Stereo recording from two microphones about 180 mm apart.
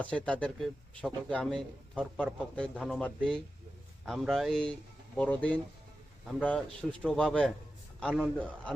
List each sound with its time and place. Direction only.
0.3 s a man's voice: 5° left (ahead or behind)